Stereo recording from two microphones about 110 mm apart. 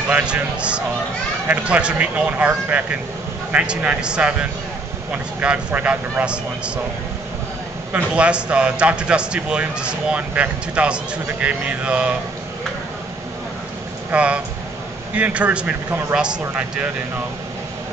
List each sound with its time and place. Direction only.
0.1 s a man's voice: 10° right (ahead or behind)
7.9 s a man's voice: 10° right (ahead or behind)
14.1 s a man's voice: 10° right (ahead or behind)